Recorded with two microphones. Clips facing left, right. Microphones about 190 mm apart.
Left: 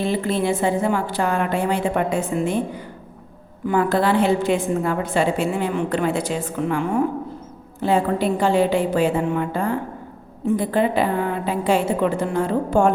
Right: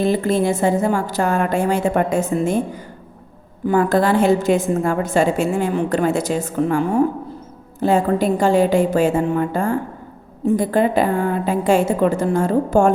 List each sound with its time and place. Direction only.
0.0 s a woman's voice: 45° right (ahead or behind)
3.7 s a woman's voice: 45° right (ahead or behind)